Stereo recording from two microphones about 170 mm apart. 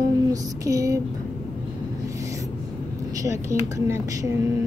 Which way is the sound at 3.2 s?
15° right (ahead or behind).